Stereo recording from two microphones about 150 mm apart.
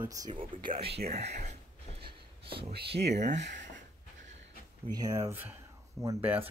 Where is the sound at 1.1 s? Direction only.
50° right (ahead or behind).